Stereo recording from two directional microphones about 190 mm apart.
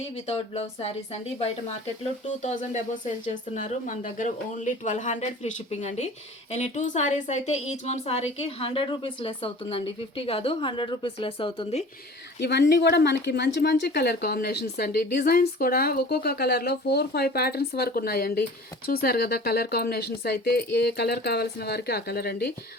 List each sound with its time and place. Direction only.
0.3 s speech: 30° left (ahead or behind)
12.4 s a woman's voice: 60° left (ahead or behind)